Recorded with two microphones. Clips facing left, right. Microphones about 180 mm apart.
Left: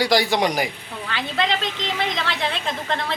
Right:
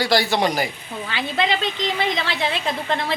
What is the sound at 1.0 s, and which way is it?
A woman's voice, 5° right (ahead or behind).